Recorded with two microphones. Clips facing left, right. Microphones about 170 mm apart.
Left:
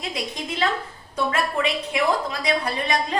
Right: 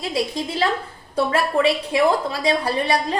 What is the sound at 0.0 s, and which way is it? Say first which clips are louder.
A woman's voice: right 6 dB; 30° right (ahead or behind).